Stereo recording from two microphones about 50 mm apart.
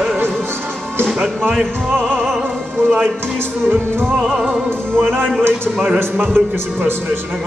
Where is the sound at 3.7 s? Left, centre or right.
Right.